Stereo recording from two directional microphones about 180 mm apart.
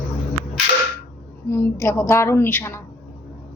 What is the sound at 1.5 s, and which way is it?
A woman's voice, 15° left (ahead or behind).